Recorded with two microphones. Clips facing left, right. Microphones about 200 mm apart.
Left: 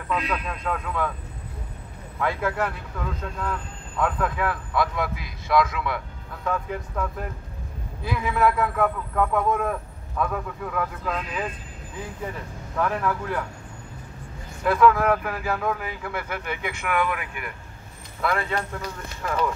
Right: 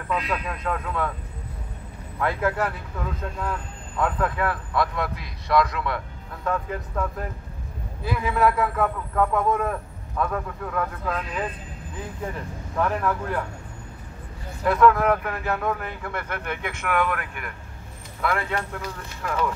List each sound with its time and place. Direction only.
0.1 s a man's voice: centre (ahead or behind)
2.1 s a man's voice: centre (ahead or behind)
4.0 s a man's voice: centre (ahead or behind)
12.7 s a man's voice: centre (ahead or behind)
14.6 s a man's voice: centre (ahead or behind)
19.2 s a man's voice: 5° left (ahead or behind)